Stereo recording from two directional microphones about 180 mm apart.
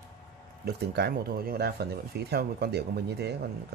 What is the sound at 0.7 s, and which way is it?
Speech, 60° right (ahead or behind).